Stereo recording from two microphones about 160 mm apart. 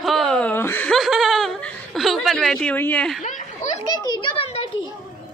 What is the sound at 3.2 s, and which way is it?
Snicker, 55° left (ahead or behind).